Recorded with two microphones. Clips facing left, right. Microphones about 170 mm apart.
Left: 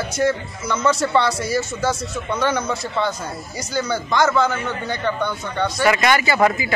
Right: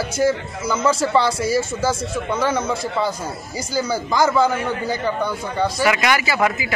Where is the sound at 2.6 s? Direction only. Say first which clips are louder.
Right 1 dB; 30° right (ahead or behind).